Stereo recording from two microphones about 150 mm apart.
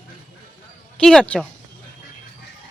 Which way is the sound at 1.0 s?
5° left (ahead or behind).